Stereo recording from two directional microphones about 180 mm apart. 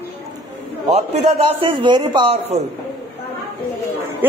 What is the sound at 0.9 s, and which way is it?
A man's voice, 35° right (ahead or behind).